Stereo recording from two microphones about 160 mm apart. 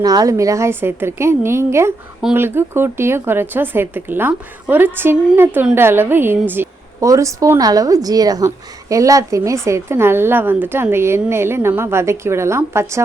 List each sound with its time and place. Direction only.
0.0 s speech: 25° right (ahead or behind)